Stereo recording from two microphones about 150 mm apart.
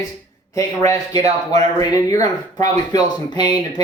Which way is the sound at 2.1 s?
25° left (ahead or behind).